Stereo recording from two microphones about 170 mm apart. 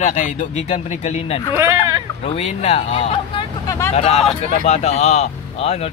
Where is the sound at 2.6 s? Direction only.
40° left (ahead or behind).